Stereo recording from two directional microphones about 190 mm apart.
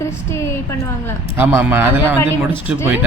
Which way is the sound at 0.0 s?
15° left (ahead or behind).